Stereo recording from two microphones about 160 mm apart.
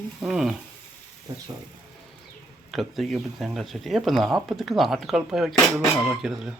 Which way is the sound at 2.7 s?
Centre (ahead or behind).